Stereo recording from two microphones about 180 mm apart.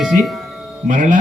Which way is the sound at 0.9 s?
45° right (ahead or behind).